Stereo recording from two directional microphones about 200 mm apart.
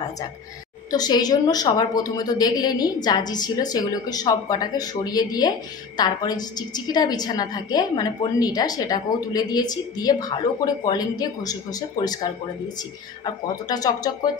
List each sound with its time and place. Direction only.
0.9 s a woman's voice: 20° left (ahead or behind)